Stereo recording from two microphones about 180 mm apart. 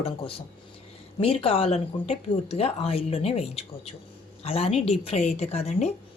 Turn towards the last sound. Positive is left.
turn(degrees=35)  # may be behind; listen again after turning